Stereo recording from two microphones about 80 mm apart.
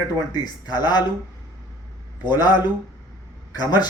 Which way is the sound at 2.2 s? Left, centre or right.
Left.